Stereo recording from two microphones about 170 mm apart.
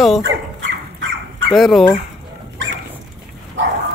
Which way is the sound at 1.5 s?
Centre (ahead or behind).